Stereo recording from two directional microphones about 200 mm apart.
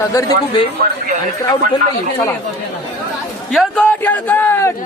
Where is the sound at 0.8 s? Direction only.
45° right (ahead or behind).